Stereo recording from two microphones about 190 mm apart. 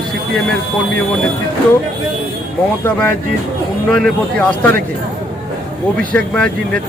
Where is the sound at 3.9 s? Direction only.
5° left (ahead or behind).